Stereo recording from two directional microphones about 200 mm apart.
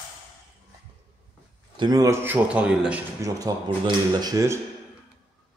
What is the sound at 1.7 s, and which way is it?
Speech, 20° right (ahead or behind).